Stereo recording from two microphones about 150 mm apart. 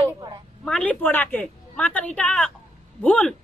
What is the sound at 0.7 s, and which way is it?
A man's voice, 10° left (ahead or behind).